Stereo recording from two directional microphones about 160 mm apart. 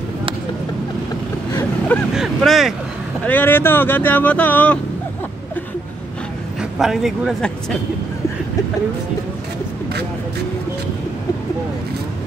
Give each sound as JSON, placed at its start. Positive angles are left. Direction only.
{"t": 2.1, "sound": "a sound", "side_deg": 0}
{"t": 3.3, "sound": "speech", "side_deg": 10}
{"t": 6.8, "sound": "a man's voice", "side_deg": 0}